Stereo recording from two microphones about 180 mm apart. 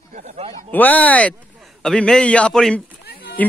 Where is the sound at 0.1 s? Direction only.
40° right (ahead or behind).